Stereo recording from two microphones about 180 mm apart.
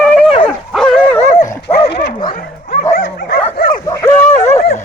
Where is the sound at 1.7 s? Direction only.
35° left (ahead or behind).